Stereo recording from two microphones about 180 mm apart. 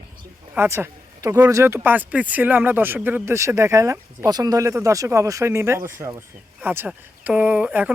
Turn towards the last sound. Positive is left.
turn(degrees=-5)  # may be behind; listen again after turning